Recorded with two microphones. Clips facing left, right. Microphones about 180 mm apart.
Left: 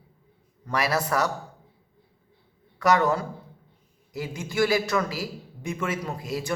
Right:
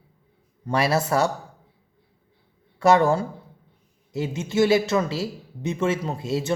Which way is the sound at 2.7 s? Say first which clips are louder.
Right 4 dB; 25° right (ahead or behind).